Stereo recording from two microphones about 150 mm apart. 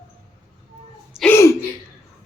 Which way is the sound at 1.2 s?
15° left (ahead or behind).